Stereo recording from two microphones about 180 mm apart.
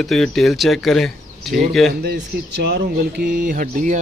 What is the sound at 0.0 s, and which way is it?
Speech, centre (ahead or behind).